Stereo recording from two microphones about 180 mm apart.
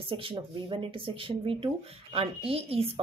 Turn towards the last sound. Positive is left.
turn(degrees=-30)  # may be behind; listen again after turning